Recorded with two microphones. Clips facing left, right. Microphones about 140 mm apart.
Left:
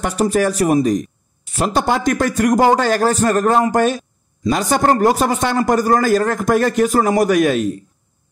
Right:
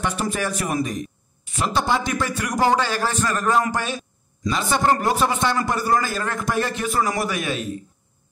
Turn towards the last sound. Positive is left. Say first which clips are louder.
# left 11 dB
turn(degrees=45)  # may be behind; listen again after turning